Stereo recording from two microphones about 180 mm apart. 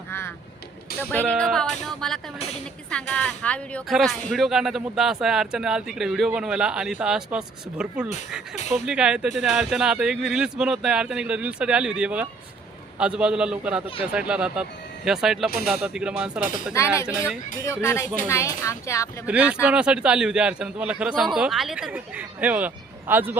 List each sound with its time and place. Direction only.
0.9 s a woman's voice: 10° left (ahead or behind)
16.7 s speech: 15° left (ahead or behind)
18.3 s speech: 15° left (ahead or behind)
19.2 s a woman's voice: 5° right (ahead or behind)